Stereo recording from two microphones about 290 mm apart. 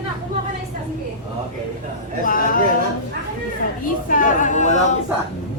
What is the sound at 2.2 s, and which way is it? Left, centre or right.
Speech, left.